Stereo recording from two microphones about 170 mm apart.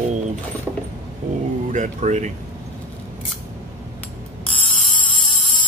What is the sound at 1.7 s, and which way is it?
Speech, 45° right (ahead or behind).